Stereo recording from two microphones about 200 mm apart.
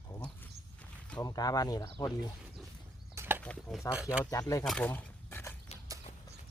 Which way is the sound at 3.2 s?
10° right (ahead or behind).